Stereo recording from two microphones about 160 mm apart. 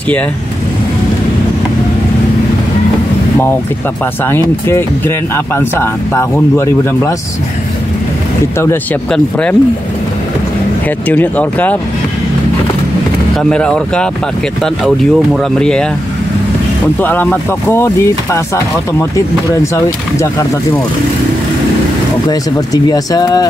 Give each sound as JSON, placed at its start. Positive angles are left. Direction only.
{"t": 4.3, "sound": "speech", "side_deg": 15}
{"t": 9.1, "sound": "speech", "side_deg": 5}
{"t": 11.1, "sound": "speech", "side_deg": 10}
{"t": 13.4, "sound": "speech", "side_deg": 5}
{"t": 15.3, "sound": "speech", "side_deg": 5}
{"t": 17.0, "sound": "speech", "side_deg": 10}
{"t": 19.6, "sound": "speech", "side_deg": 20}
{"t": 22.3, "sound": "speech", "side_deg": 25}